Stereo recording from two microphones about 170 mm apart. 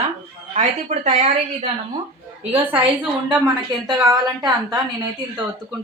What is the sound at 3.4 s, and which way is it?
A woman's voice, 20° right (ahead or behind).